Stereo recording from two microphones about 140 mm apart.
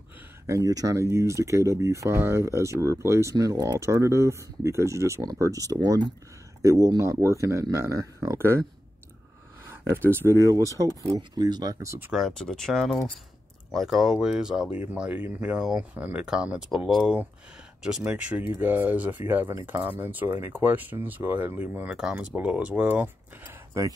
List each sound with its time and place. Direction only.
0.5 s speech: 25° right (ahead or behind)
9.7 s speech: 15° right (ahead or behind)
12.1 s speech: centre (ahead or behind)